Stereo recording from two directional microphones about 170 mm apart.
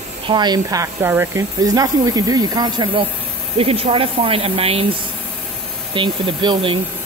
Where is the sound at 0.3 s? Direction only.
25° right (ahead or behind).